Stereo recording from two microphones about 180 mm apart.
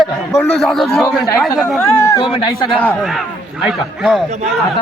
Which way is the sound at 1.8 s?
15° left (ahead or behind).